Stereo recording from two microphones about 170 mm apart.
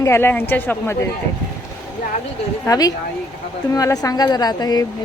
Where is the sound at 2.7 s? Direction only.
20° left (ahead or behind).